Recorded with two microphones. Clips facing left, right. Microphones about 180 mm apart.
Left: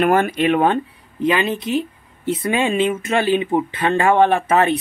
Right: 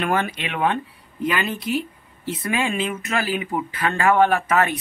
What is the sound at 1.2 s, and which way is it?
Speech, 20° left (ahead or behind).